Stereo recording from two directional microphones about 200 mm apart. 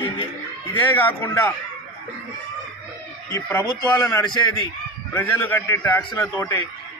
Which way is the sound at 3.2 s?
10° left (ahead or behind).